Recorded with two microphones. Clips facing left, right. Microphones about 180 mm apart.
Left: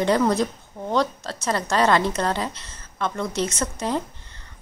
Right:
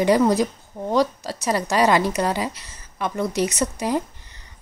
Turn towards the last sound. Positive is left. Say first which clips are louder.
# right 3 dB
turn(degrees=-15)  # may be behind; listen again after turning